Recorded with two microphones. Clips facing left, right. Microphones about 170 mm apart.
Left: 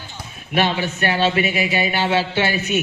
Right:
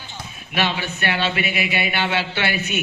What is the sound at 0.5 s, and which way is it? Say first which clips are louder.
Speech: left 4 dB; 45° left (ahead or behind).